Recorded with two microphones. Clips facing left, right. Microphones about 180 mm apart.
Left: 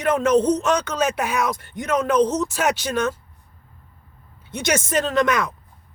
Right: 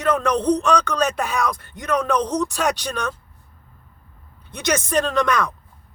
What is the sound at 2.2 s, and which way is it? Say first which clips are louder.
Speech: left 3 dB; 25° left (ahead or behind).